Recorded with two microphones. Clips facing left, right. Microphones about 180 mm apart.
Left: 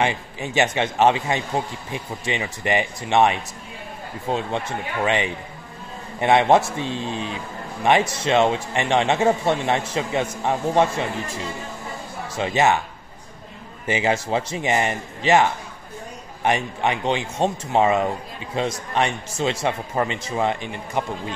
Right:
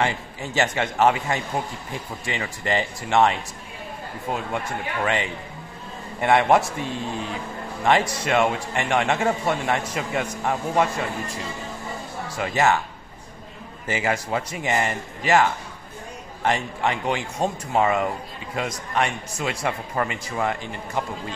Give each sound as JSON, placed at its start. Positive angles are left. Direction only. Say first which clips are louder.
{"t": 0.0, "sound": "speech", "louder": "left 2 dB", "side_deg": 20}
{"t": 12.4, "sound": "speech", "louder": "left 2 dB", "side_deg": 20}
{"t": 13.8, "sound": "speech", "louder": "left 3 dB", "side_deg": 20}
{"t": 16.4, "sound": "speech", "louder": "left 2 dB", "side_deg": 15}